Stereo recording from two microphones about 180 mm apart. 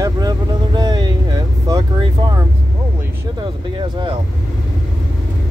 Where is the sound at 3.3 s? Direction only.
25° right (ahead or behind).